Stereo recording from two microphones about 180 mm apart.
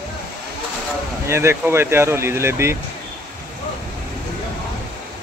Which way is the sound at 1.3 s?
15° right (ahead or behind).